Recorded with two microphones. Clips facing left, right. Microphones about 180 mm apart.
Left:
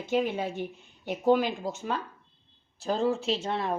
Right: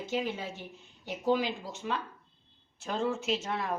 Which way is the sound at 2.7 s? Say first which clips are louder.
Left 5 dB; 35° left (ahead or behind).